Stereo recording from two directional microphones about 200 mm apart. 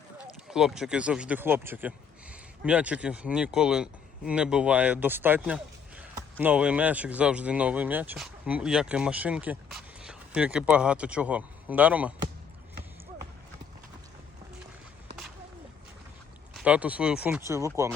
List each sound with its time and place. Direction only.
0.4 s speech: centre (ahead or behind)
16.6 s speech: 5° right (ahead or behind)